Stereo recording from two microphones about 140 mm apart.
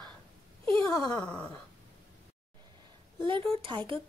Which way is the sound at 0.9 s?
30° left (ahead or behind).